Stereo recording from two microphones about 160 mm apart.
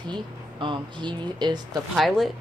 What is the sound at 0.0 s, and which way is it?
Speech, 30° right (ahead or behind).